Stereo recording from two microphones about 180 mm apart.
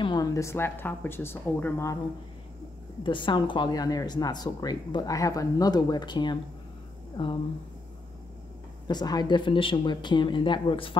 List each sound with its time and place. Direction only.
0.0 s speech: 20° left (ahead or behind)
3.0 s a woman's voice: 25° left (ahead or behind)
8.8 s a woman's voice: 25° left (ahead or behind)